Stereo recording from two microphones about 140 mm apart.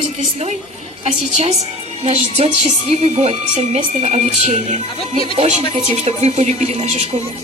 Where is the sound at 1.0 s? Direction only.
50° right (ahead or behind).